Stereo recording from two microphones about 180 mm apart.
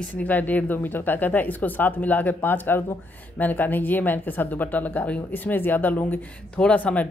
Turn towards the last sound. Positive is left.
turn(degrees=10)  # may be behind; listen again after turning